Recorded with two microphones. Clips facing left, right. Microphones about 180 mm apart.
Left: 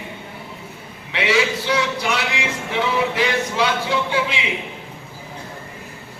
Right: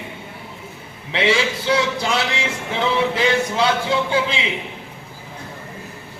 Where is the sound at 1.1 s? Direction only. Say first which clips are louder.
Right 1 dB; 30° right (ahead or behind).